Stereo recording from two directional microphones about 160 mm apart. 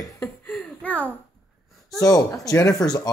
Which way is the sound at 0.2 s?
5° left (ahead or behind).